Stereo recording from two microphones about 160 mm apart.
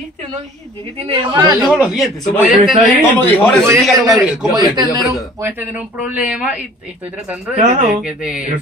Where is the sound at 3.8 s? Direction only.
Centre (ahead or behind).